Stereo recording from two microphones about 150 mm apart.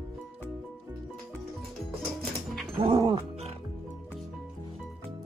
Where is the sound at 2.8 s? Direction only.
35° right (ahead or behind).